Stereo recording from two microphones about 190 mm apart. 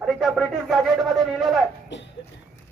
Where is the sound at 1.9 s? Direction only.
70° left (ahead or behind).